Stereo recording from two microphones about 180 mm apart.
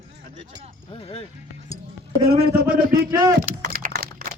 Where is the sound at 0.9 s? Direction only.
30° left (ahead or behind).